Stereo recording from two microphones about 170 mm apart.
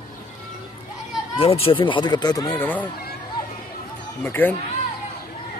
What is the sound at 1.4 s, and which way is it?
Speech, 35° left (ahead or behind).